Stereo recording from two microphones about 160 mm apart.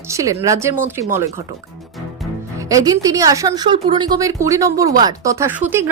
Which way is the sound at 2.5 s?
20° right (ahead or behind).